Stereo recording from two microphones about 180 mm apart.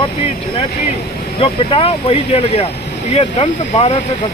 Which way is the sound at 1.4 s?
30° left (ahead or behind).